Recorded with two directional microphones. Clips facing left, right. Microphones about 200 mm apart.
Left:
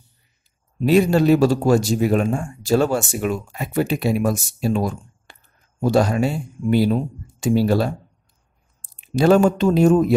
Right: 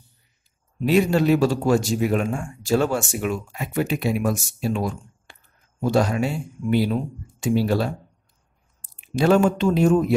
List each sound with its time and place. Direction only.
0.7 s speech: 40° left (ahead or behind)
9.0 s speech: 35° left (ahead or behind)